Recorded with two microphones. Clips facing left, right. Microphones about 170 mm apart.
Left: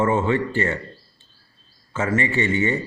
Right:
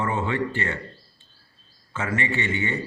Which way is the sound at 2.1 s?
40° left (ahead or behind).